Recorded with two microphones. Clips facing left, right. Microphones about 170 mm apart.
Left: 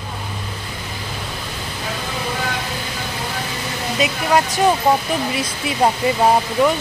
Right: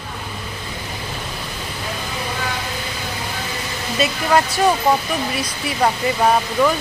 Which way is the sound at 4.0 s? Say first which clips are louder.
Even; 15° left (ahead or behind).